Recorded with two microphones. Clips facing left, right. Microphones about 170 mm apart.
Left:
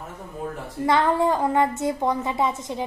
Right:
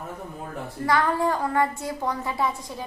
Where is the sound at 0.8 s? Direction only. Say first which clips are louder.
Left 3 dB; 20° left (ahead or behind).